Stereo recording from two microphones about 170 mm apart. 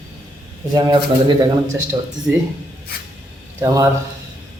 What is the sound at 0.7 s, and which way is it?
Speech, 25° right (ahead or behind).